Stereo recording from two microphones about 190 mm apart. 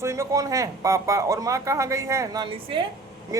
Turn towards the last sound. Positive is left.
turn(degrees=-20)  # may be behind; listen again after turning